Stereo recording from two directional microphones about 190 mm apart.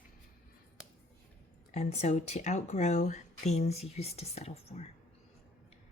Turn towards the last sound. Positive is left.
turn(degrees=30)  # may be behind; listen again after turning